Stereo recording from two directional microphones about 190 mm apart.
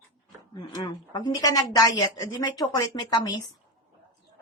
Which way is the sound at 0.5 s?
25° left (ahead or behind).